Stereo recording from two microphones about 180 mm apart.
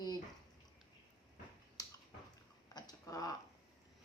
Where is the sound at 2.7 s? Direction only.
20° left (ahead or behind).